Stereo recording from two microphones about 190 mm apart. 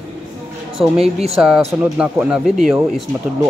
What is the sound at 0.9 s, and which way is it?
Speech, 30° right (ahead or behind).